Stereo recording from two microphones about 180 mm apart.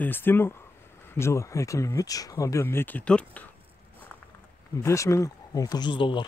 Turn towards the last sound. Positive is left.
turn(degrees=25)  # may be behind; listen again after turning